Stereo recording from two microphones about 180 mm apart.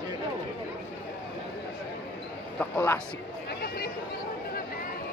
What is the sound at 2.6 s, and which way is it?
Speech, 10° left (ahead or behind).